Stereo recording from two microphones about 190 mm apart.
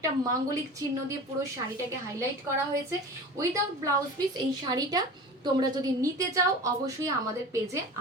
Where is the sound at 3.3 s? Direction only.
15° right (ahead or behind).